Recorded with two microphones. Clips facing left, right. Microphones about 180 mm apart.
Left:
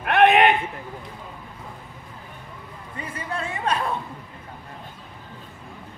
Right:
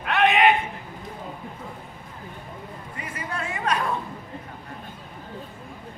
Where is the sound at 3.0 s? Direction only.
30° left (ahead or behind).